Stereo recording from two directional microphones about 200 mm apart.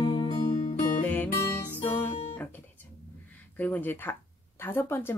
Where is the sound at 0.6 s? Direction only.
40° left (ahead or behind).